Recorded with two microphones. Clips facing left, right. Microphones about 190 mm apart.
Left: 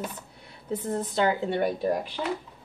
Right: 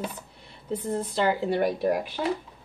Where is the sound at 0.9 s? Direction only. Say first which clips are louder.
Even; 5° right (ahead or behind).